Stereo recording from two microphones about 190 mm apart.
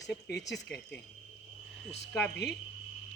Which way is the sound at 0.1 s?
60° left (ahead or behind).